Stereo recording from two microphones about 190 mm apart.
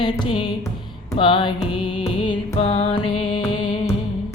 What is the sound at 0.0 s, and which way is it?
Music, 25° left (ahead or behind).